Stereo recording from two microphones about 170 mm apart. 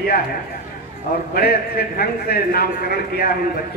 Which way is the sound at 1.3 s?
65° left (ahead or behind).